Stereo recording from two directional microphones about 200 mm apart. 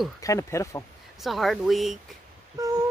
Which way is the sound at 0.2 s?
15° left (ahead or behind).